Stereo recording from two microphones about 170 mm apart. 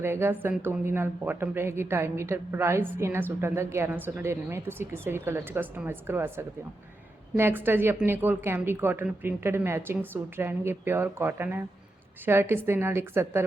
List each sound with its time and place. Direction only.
0.0 s a woman's voice: 15° right (ahead or behind)